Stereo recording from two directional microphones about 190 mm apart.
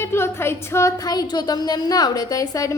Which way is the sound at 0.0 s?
15° left (ahead or behind).